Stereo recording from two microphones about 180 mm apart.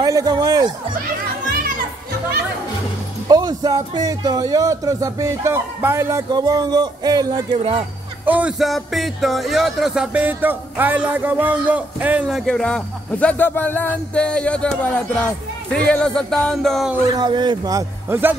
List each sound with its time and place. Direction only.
0.0 s speech: 20° right (ahead or behind)
3.3 s speech: 20° right (ahead or behind)
8.3 s speech: 5° right (ahead or behind)
15.9 s speech: 5° left (ahead or behind)
17.2 s speech: 25° right (ahead or behind)